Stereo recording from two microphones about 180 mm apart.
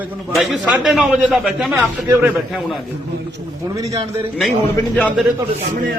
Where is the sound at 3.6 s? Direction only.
20° right (ahead or behind).